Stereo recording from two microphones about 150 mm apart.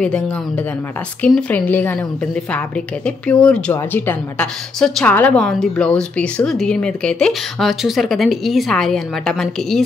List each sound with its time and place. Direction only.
1.2 s a woman's voice: 10° left (ahead or behind)
3.1 s a woman's voice: 5° left (ahead or behind)